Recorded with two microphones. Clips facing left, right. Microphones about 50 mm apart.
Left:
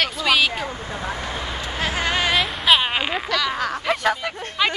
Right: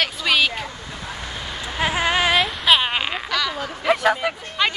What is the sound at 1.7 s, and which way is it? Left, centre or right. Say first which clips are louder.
Speech: right 3 dB; centre.